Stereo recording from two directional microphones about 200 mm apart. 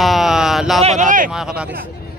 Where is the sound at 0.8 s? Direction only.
35° right (ahead or behind).